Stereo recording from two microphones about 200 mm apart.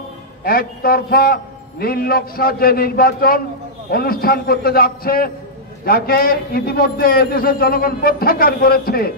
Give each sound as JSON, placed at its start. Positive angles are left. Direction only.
{"t": 0.4, "sound": "a man's voice", "side_deg": 50}